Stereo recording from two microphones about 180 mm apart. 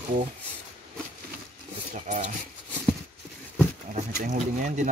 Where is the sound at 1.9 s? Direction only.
45° right (ahead or behind).